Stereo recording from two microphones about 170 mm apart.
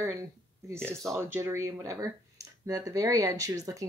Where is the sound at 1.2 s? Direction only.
15° right (ahead or behind).